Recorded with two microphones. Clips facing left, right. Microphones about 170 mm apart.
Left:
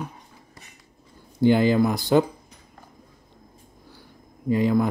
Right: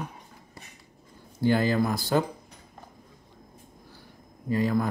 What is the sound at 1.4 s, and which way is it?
Speech, 20° left (ahead or behind).